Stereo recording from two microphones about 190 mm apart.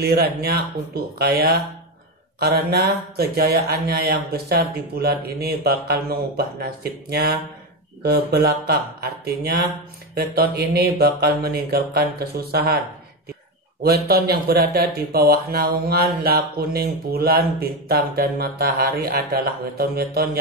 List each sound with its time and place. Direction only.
0.0 s mantra: 55° right (ahead or behind)
13.8 s mantra: 55° right (ahead or behind)